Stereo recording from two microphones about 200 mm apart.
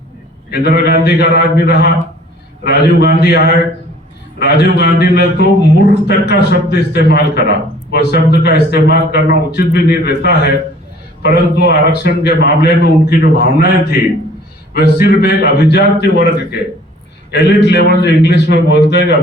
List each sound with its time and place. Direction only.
0.5 s a man's voice: 55° left (ahead or behind)